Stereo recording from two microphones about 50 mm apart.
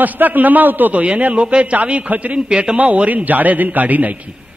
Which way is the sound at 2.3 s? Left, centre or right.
Centre.